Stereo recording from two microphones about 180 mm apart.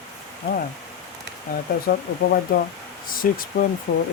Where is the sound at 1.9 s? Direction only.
55° left (ahead or behind).